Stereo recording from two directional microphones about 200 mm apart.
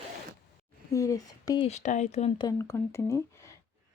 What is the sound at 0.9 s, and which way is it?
Speech, 15° left (ahead or behind).